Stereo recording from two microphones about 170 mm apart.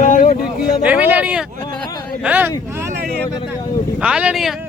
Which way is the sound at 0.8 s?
10° right (ahead or behind).